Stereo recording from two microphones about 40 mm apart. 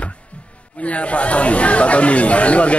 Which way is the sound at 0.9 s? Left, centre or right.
Left.